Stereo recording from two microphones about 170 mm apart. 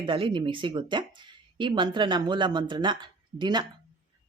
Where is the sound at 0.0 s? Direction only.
30° right (ahead or behind).